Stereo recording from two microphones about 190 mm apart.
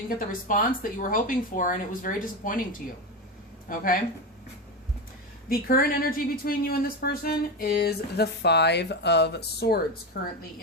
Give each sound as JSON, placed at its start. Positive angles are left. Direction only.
{"t": 0.2, "sound": "speech", "side_deg": 45}
{"t": 5.5, "sound": "a woman's voice", "side_deg": 50}